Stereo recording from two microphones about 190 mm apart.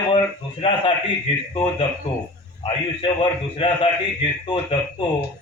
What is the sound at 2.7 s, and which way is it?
A man's voice, 25° left (ahead or behind).